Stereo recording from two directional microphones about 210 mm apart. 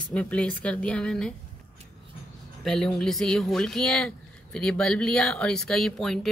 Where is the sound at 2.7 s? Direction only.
5° left (ahead or behind).